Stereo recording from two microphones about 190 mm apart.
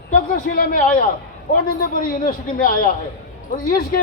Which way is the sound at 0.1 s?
45° left (ahead or behind).